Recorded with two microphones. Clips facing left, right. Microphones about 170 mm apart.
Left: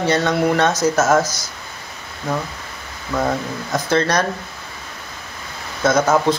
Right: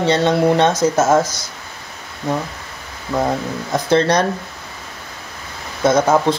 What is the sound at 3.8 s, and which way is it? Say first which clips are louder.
Speech: right 3 dB; 25° right (ahead or behind).